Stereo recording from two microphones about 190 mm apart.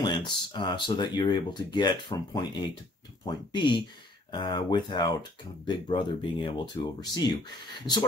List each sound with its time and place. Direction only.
0.0 s speech: 20° left (ahead or behind)